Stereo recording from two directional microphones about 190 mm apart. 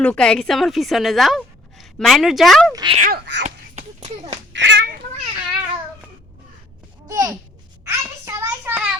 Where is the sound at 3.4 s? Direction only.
35° right (ahead or behind).